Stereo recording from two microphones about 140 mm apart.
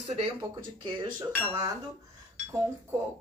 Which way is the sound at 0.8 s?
35° right (ahead or behind).